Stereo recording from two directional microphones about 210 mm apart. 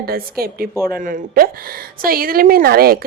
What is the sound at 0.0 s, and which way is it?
A woman's voice, 45° right (ahead or behind).